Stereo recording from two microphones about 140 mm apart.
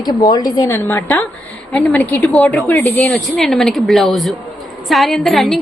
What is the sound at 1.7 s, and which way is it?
A woman's voice, 10° left (ahead or behind).